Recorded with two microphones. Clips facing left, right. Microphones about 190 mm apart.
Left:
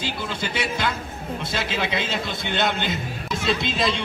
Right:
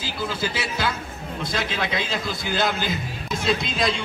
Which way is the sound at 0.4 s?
5° right (ahead or behind).